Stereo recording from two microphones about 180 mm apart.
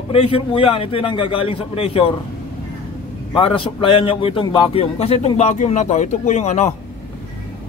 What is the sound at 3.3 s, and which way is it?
A man's voice, 30° left (ahead or behind).